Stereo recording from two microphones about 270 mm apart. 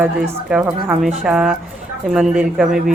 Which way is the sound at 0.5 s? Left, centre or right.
Centre.